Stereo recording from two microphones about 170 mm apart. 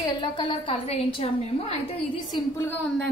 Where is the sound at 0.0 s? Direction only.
30° left (ahead or behind).